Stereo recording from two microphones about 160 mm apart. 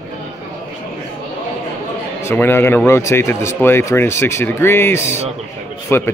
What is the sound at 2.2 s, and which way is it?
Speech, 15° left (ahead or behind).